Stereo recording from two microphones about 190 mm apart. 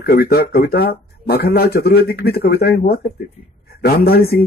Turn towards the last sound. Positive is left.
turn(degrees=55)  # may be behind; listen again after turning